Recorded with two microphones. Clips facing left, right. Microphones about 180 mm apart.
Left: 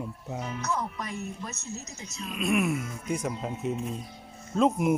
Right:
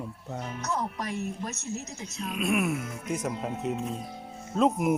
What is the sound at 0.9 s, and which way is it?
Speech, 40° right (ahead or behind).